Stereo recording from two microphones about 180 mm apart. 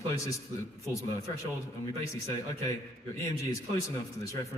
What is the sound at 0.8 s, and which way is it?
A man's voice, 15° left (ahead or behind).